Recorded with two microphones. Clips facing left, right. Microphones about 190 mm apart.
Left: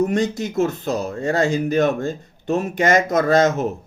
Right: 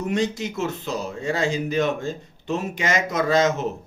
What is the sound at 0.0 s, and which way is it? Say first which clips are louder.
Speech: left 4 dB; 50° left (ahead or behind).